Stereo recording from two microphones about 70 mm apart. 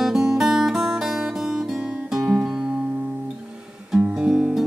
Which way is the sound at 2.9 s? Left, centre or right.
Right.